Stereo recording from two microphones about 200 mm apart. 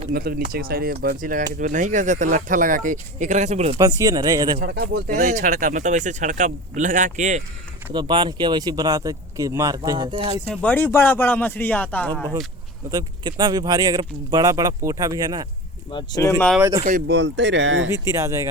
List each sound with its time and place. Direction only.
0.1 s speech: 50° right (ahead or behind); by 3.8 s 35° right (ahead or behind)
3.8 s speech: 20° right (ahead or behind)
4.6 s speech: 55° right (ahead or behind)
5.1 s speech: 40° right (ahead or behind)
7.9 s speech: 25° right (ahead or behind)
10.5 s speech: 5° left (ahead or behind)
12.9 s speech: 20° right (ahead or behind)
15.9 s speech: 20° left (ahead or behind)
16.6 s speech: 15° right (ahead or behind)
17.1 s speech: 60° right (ahead or behind)
17.9 s speech: 15° right (ahead or behind)